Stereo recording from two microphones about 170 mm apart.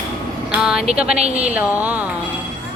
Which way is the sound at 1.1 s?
40° right (ahead or behind).